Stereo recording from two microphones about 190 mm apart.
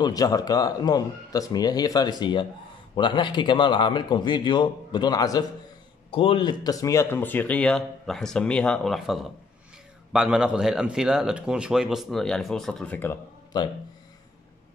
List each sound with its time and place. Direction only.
0.0 s speech: 20° left (ahead or behind)